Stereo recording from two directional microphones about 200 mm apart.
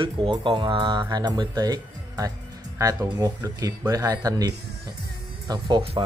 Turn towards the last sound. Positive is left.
turn(degrees=-25)  # may be behind; listen again after turning